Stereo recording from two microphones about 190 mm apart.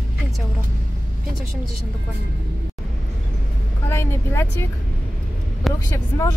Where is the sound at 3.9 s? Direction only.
15° left (ahead or behind).